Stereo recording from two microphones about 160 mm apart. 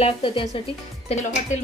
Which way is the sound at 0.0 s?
35° left (ahead or behind).